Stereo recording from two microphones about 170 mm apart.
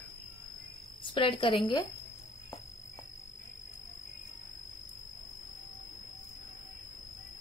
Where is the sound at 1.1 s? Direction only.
30° left (ahead or behind).